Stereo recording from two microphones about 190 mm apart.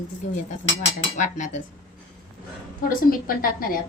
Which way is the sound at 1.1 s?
40° left (ahead or behind).